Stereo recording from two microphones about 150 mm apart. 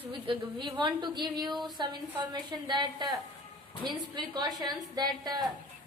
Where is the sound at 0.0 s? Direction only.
35° right (ahead or behind).